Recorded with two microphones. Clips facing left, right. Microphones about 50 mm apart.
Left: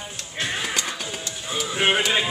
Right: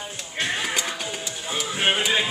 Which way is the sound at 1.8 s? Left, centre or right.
Centre.